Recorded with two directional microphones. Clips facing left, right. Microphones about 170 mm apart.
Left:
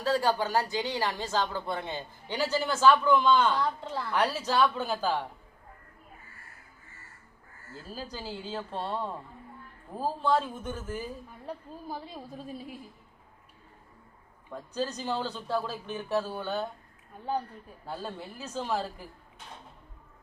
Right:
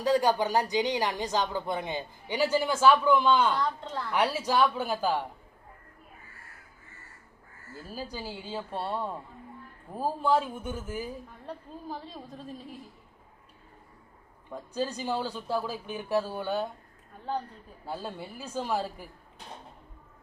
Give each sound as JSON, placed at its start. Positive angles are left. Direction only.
{"t": 0.0, "sound": "speech", "side_deg": -15}
{"t": 3.6, "sound": "a woman's voice", "side_deg": 5}
{"t": 4.1, "sound": "speech", "side_deg": -10}
{"t": 7.7, "sound": "speech", "side_deg": -10}
{"t": 11.4, "sound": "a woman's voice", "side_deg": 10}
{"t": 14.5, "sound": "speech", "side_deg": -10}
{"t": 17.8, "sound": "speech", "side_deg": -10}